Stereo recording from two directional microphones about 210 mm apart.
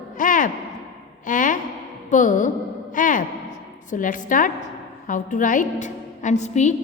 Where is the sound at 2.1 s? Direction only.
40° left (ahead or behind).